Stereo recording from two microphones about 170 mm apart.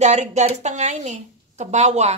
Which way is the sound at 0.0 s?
40° right (ahead or behind).